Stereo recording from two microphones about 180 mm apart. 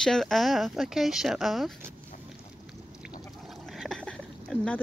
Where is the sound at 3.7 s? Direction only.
5° left (ahead or behind).